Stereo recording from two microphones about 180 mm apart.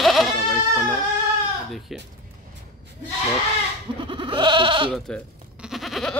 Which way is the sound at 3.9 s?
30° right (ahead or behind).